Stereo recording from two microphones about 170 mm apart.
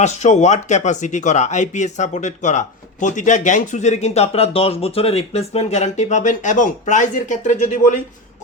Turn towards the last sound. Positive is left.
turn(degrees=50)  # may be behind; listen again after turning